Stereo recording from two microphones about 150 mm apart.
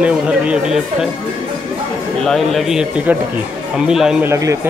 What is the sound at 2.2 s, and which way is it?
Speech, centre (ahead or behind).